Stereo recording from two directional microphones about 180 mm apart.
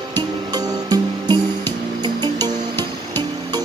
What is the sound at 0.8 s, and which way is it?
Music, 25° right (ahead or behind).